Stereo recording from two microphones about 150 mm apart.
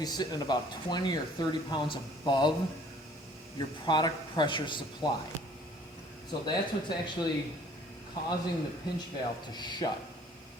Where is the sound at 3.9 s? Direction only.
30° left (ahead or behind).